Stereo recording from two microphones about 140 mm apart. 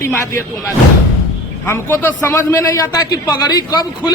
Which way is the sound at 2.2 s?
20° left (ahead or behind).